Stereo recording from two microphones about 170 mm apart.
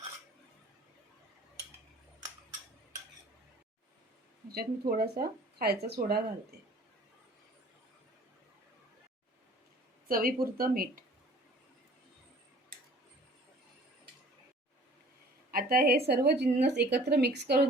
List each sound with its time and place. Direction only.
4.5 s speech: 65° right (ahead or behind)
10.1 s speech: 55° right (ahead or behind)
15.5 s a woman's voice: 60° right (ahead or behind)